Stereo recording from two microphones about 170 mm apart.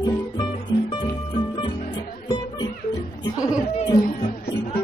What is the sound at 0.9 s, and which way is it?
Music, 30° left (ahead or behind).